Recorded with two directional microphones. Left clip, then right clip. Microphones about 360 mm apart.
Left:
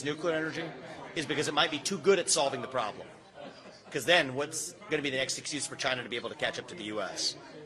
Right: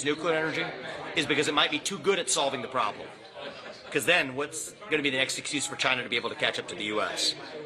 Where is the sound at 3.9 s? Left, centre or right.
Left.